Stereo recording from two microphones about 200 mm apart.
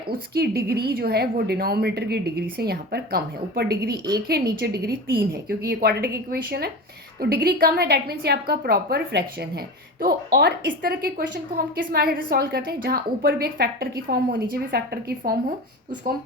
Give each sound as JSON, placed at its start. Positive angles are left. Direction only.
{"t": 0.1, "sound": "a woman's voice", "side_deg": -50}
{"t": 15.2, "sound": "speech", "side_deg": -40}